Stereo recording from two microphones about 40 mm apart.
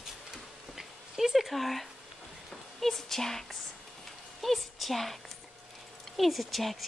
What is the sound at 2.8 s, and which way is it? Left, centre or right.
Speech, centre.